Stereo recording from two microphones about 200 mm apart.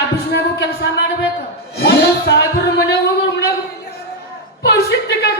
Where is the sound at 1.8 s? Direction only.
55° left (ahead or behind).